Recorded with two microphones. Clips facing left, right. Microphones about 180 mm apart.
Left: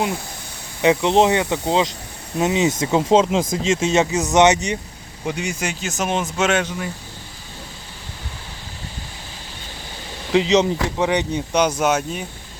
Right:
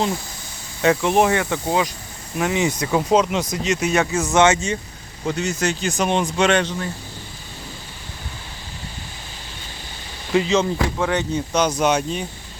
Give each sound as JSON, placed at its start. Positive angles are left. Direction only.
{"t": 0.8, "sound": "speech", "side_deg": 20}
{"t": 10.3, "sound": "speech", "side_deg": 20}